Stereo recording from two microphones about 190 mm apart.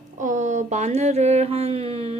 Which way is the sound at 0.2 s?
40° right (ahead or behind).